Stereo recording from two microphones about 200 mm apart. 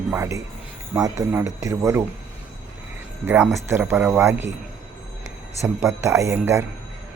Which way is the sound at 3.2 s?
10° right (ahead or behind).